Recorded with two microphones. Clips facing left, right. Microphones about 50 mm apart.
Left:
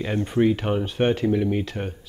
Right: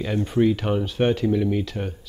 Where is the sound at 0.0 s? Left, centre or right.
Left.